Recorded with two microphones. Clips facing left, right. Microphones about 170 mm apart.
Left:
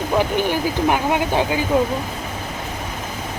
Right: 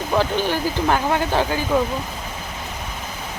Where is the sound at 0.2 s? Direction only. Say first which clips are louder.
Left 1 dB; 15° left (ahead or behind).